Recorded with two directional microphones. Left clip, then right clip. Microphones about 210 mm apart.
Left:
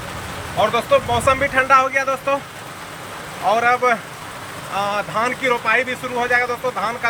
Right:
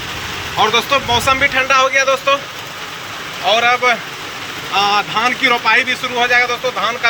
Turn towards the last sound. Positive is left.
turn(degrees=15)  # may be behind; listen again after turning